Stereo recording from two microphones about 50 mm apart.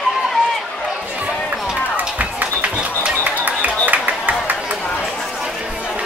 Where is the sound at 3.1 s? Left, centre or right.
Right.